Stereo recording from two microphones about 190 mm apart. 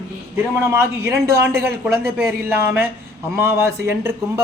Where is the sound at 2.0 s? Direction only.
55° right (ahead or behind).